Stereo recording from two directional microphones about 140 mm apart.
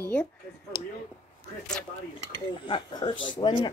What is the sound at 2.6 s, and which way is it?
Speech, 40° left (ahead or behind).